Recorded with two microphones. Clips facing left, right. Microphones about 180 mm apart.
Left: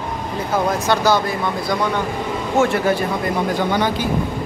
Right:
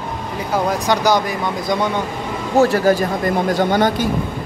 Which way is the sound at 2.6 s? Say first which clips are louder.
Right 4 dB; 40° right (ahead or behind).